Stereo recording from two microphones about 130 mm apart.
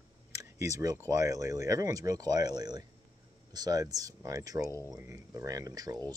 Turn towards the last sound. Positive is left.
turn(degrees=-30)  # may be behind; listen again after turning